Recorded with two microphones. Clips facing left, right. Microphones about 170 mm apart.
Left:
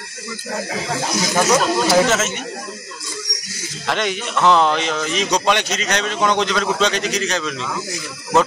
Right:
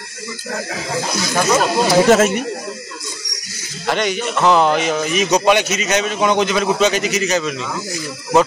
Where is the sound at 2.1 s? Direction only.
60° right (ahead or behind).